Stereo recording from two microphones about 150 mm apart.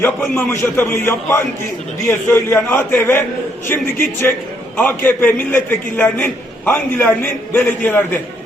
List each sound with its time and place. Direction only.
0.0 s a man's voice: 15° left (ahead or behind)